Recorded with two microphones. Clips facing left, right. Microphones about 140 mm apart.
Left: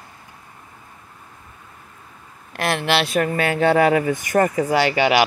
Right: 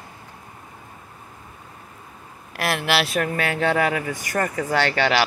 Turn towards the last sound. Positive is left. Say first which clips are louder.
# left 3 dB
turn(degrees=10)  # may be behind; listen again after turning